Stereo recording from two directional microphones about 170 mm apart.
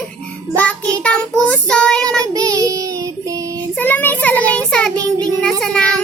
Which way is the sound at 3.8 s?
10° left (ahead or behind).